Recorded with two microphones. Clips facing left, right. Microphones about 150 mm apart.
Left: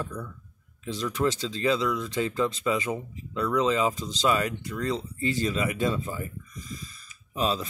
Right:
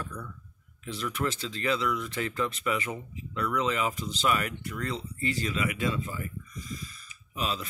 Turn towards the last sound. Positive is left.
turn(degrees=35)  # may be behind; listen again after turning